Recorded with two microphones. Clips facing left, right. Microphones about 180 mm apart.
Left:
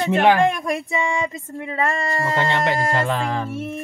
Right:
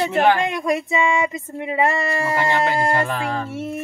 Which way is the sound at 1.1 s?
15° right (ahead or behind).